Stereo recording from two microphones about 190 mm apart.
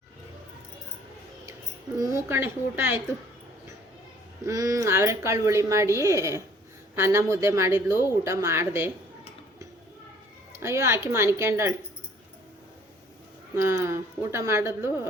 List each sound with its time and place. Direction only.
2.0 s speech: 15° right (ahead or behind)
4.4 s speech: 15° right (ahead or behind)
10.5 s speech: 15° right (ahead or behind)
13.7 s speech: 15° right (ahead or behind)